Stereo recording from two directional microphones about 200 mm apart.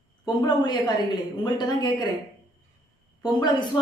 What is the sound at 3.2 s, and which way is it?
Speech, 20° left (ahead or behind).